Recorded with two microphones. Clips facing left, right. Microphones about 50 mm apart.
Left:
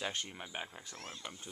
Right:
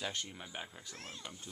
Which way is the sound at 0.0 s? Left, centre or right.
Left.